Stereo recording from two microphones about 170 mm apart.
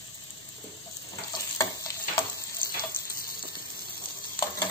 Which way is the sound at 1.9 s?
20° left (ahead or behind).